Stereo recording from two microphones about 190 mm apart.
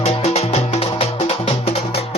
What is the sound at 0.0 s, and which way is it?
Music, 35° left (ahead or behind).